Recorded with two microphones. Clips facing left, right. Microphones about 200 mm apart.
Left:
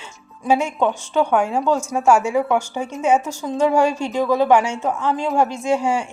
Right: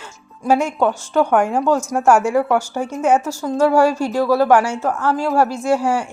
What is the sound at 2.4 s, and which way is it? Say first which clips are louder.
Speech: right 2 dB; 5° right (ahead or behind).